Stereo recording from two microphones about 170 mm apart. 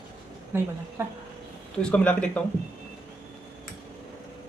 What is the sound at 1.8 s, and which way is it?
Speech, 5° left (ahead or behind).